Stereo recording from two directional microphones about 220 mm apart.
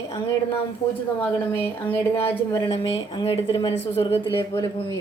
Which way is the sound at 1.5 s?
10° left (ahead or behind).